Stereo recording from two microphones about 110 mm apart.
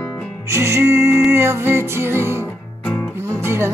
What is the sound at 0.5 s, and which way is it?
Music, 25° right (ahead or behind).